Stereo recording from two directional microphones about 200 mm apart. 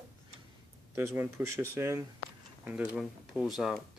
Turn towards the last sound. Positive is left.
turn(degrees=0)  # may be behind; listen again after turning